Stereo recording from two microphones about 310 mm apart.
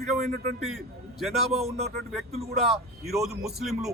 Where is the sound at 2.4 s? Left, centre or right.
Centre.